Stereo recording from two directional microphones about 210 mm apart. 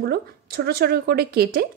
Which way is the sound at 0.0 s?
50° right (ahead or behind).